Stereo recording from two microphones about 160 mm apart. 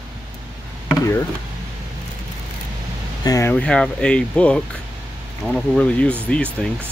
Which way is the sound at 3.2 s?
20° left (ahead or behind).